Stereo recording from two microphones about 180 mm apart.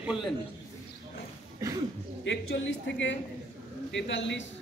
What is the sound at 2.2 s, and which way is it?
Speech, 85° left.